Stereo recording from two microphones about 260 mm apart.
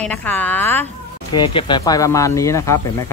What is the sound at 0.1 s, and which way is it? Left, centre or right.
Speech, centre.